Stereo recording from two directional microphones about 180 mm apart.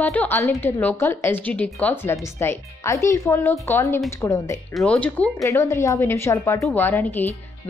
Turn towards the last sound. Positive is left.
turn(degrees=10)  # may be behind; listen again after turning